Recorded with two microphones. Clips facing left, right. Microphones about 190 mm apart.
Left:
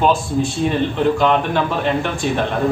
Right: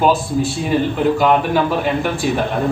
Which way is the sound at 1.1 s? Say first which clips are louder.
Right 2 dB; 5° right (ahead or behind).